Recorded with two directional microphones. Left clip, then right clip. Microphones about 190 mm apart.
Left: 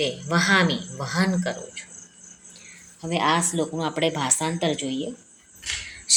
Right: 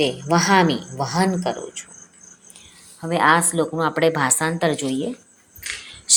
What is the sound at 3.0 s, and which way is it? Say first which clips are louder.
A woman's voice: right 6 dB; 15° right (ahead or behind).